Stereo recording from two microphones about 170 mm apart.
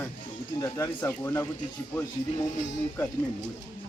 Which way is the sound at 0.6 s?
15° left (ahead or behind).